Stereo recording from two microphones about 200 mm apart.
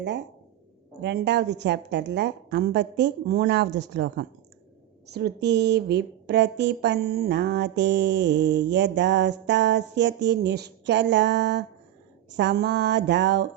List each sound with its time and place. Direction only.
1.0 s a woman's voice: 60° right (ahead or behind)